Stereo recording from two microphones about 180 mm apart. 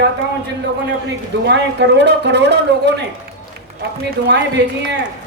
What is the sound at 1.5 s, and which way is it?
A man's voice, 70° right (ahead or behind).